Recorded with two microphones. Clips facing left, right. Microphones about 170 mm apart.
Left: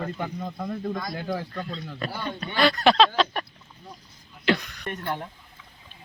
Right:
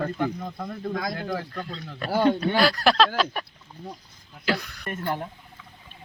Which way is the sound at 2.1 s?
90° right.